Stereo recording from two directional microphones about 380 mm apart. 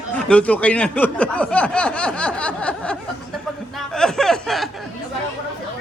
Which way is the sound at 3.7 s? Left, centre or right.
Centre.